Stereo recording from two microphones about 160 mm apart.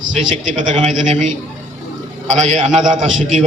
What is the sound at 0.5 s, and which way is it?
A man's voice, 50° right (ahead or behind).